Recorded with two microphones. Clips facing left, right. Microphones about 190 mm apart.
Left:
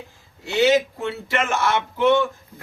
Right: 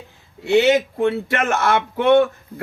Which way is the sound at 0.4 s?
60° right (ahead or behind).